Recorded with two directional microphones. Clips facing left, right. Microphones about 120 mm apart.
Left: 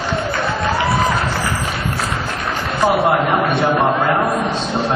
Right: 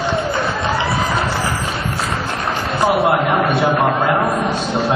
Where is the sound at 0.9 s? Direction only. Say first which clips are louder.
Left 2 dB; centre (ahead or behind).